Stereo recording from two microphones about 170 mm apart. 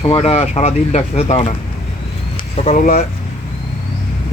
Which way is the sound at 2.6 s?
45° left (ahead or behind).